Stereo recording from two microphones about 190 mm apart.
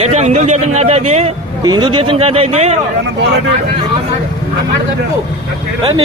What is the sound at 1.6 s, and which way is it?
Speech, 20° right (ahead or behind).